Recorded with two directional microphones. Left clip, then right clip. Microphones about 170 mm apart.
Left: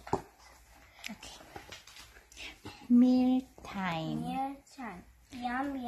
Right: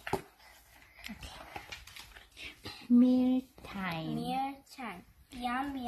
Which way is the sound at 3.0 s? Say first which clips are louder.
Left 1 dB; 5° right (ahead or behind).